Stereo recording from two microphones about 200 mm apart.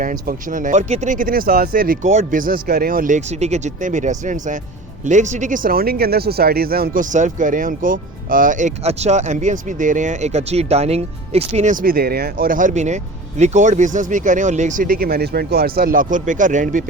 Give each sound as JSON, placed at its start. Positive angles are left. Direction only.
{"t": 0.0, "sound": "speech", "side_deg": -40}